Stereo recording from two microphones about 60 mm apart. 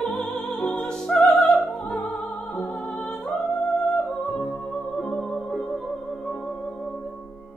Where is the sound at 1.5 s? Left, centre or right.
Left.